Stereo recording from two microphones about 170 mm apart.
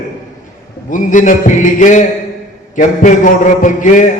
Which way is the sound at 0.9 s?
50° left (ahead or behind).